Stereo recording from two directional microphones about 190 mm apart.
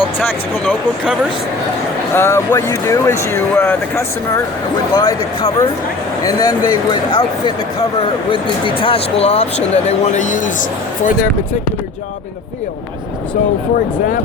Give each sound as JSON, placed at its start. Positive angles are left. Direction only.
{"t": 0.3, "sound": "speech", "side_deg": 5}
{"t": 2.1, "sound": "speech", "side_deg": 15}
{"t": 8.8, "sound": "speech", "side_deg": 30}